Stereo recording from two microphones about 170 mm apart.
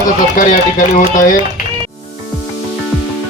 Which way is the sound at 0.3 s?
50° left (ahead or behind).